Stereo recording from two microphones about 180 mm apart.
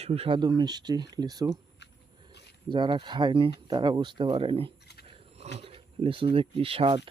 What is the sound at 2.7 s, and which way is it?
Speech, 25° right (ahead or behind).